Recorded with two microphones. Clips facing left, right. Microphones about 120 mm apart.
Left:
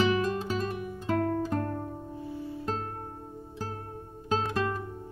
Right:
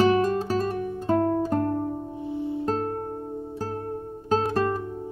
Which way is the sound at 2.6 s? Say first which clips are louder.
Right 7 dB; 35° right (ahead or behind).